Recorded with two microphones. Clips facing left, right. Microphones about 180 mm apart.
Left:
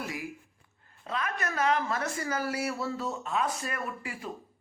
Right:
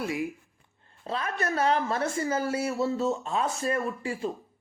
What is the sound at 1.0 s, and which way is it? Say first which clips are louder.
Speech: right 3 dB; 30° right (ahead or behind).